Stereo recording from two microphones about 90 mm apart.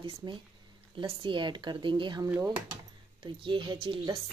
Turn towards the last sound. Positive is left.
turn(degrees=-75)  # may be behind; listen again after turning